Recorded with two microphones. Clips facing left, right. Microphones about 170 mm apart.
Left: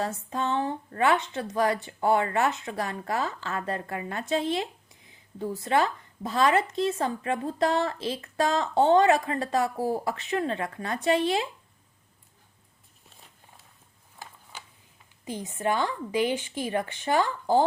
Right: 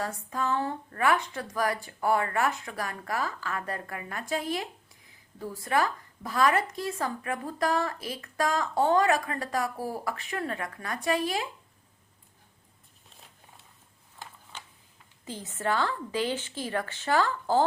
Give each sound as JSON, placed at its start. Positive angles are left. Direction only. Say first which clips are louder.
{"t": 0.0, "sound": "speech", "louder": "left 2 dB", "side_deg": 25}
{"t": 15.2, "sound": "a woman's voice", "louder": "left 3 dB", "side_deg": 15}